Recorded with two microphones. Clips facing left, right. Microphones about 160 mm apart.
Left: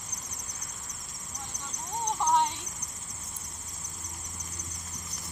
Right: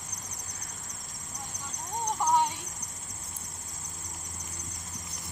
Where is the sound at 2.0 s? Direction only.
5° right (ahead or behind).